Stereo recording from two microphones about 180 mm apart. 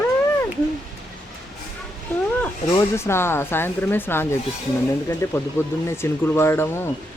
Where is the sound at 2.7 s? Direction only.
15° left (ahead or behind).